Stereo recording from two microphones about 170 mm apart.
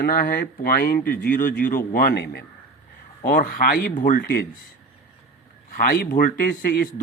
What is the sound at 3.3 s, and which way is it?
Speech, 55° left (ahead or behind).